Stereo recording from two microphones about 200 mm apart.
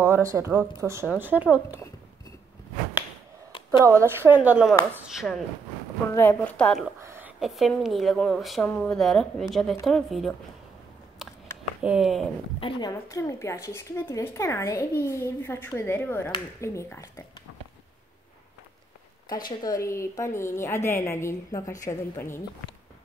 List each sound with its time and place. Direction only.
0.0 s speech: 15° right (ahead or behind)
3.8 s a woman's voice: 15° right (ahead or behind)
6.1 s a woman's voice: 10° left (ahead or behind)
7.0 s a woman's voice: 10° right (ahead or behind)
11.8 s a woman's voice: 5° right (ahead or behind)
12.5 s a woman's voice: 25° left (ahead or behind)
12.9 s a woman's voice: 15° left (ahead or behind)
19.2 s a woman's voice: 20° left (ahead or behind)